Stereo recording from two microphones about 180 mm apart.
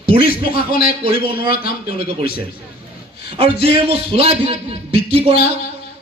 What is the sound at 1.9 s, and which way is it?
Speech, 30° right (ahead or behind).